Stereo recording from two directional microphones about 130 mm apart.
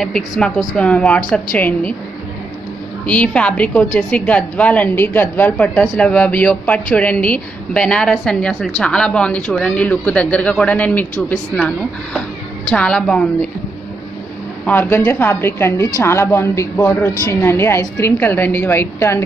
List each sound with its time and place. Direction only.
0.0 s a woman's voice: 5° left (ahead or behind)
3.1 s a woman's voice: 10° left (ahead or behind)
14.7 s a woman's voice: 15° left (ahead or behind)